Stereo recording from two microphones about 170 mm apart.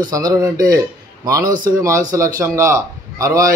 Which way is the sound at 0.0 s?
20° right (ahead or behind).